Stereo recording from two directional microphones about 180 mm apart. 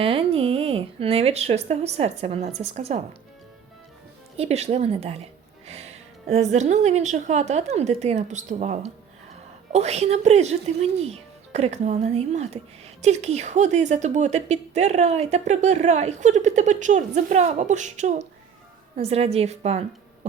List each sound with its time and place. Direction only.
0.0 s speech: 30° right (ahead or behind)
4.4 s speech: 35° right (ahead or behind)